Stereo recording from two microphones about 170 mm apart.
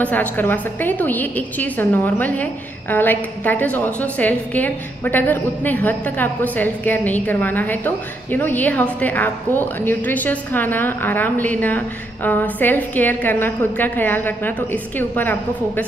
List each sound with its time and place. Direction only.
0.0 s a woman's voice: 10° left (ahead or behind)